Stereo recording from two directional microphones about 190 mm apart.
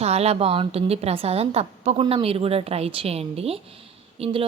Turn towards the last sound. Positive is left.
turn(degrees=-30)  # may be behind; listen again after turning